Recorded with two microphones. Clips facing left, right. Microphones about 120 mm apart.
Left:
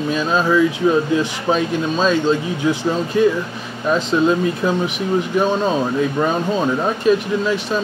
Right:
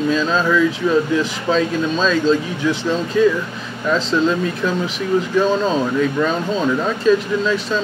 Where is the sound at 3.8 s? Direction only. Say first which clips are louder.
Left 1 dB; 20° left (ahead or behind).